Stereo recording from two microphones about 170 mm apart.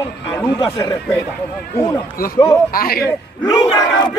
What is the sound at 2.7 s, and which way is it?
Speech, 60° left (ahead or behind).